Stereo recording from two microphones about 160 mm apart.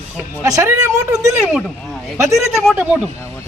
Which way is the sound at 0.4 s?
20° right (ahead or behind).